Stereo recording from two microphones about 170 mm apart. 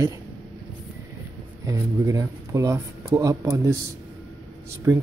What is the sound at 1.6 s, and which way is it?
Speech, 20° right (ahead or behind).